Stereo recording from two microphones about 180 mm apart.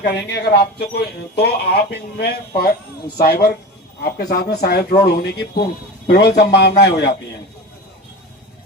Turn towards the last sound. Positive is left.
turn(degrees=65)  # may be behind; listen again after turning